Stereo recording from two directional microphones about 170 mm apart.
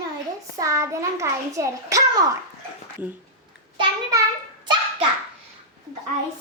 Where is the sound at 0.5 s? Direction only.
20° right (ahead or behind).